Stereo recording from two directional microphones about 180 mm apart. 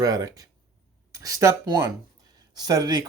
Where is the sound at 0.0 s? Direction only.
20° right (ahead or behind).